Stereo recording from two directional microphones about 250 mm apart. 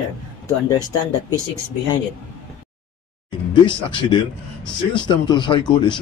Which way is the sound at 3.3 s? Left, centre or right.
Centre.